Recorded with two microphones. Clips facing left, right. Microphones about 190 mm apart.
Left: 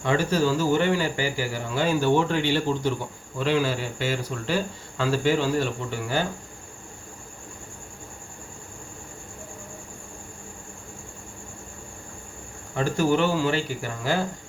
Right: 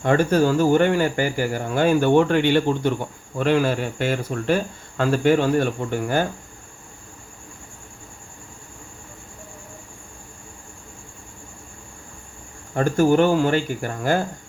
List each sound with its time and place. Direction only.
0.0 s speech: 50° right (ahead or behind)
12.7 s speech: 50° right (ahead or behind)